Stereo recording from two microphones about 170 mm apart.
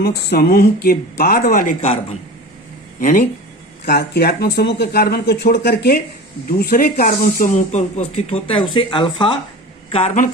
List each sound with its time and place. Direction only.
0.0 s speech: 65° left (ahead or behind)
1.8 s a man's voice: 40° left (ahead or behind)
3.0 s speech: 50° left (ahead or behind)
3.8 s speech: 75° left (ahead or behind)
6.5 s a man's voice: 60° left (ahead or behind); by 10.2 s 40° left (ahead or behind)